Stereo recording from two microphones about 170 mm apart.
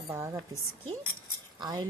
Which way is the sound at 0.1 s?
15° right (ahead or behind).